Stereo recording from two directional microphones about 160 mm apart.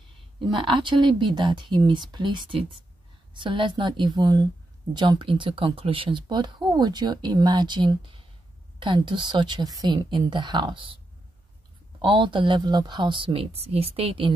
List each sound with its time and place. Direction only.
0.5 s speech: 30° right (ahead or behind)
12.0 s speech: 30° right (ahead or behind)